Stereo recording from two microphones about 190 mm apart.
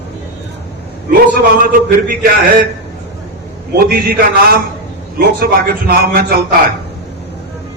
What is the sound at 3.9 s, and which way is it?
A man's voice, 50° right (ahead or behind).